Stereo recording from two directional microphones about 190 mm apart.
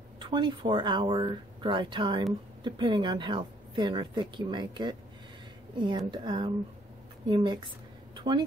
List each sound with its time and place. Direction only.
0.2 s a woman's voice: 25° right (ahead or behind)